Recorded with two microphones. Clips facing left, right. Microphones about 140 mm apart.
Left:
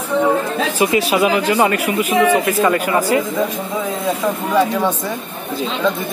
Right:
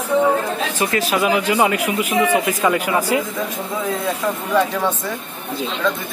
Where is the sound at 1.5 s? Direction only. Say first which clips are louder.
Left 2 dB; 10° right (ahead or behind).